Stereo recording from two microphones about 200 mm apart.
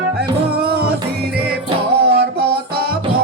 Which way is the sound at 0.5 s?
50° right (ahead or behind).